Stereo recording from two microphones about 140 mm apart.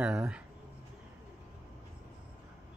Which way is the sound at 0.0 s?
10° right (ahead or behind).